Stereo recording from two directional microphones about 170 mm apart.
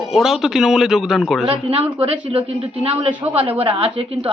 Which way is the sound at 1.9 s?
35° right (ahead or behind).